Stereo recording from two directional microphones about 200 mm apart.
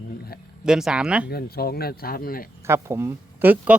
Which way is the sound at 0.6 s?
5° right (ahead or behind).